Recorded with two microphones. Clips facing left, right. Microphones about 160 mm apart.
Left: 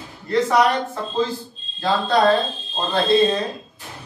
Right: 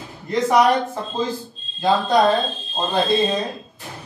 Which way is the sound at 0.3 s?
15° right (ahead or behind).